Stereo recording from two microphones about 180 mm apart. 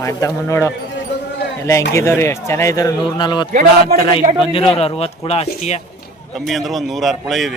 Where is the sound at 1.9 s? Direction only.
15° left (ahead or behind); by 5.8 s 35° left (ahead or behind).